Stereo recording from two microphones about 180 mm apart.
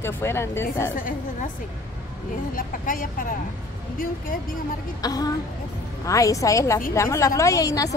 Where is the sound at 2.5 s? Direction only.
50° left (ahead or behind).